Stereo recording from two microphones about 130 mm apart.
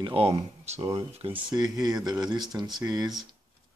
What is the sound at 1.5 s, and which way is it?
Speech, 30° right (ahead or behind).